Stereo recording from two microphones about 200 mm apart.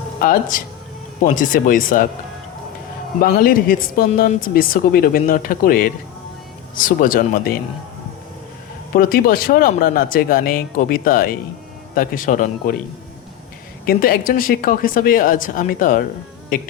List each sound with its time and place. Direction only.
0.2 s speech: 45° left (ahead or behind)
3.2 s speech: 45° left (ahead or behind)
8.9 s speech: 45° left (ahead or behind)
13.8 s speech: 45° left (ahead or behind)